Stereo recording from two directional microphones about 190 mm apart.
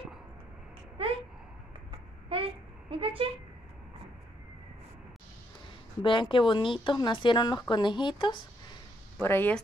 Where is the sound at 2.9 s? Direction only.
30° right (ahead or behind).